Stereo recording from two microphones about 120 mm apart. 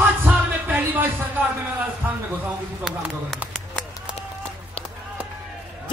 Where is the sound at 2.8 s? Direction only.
Centre (ahead or behind).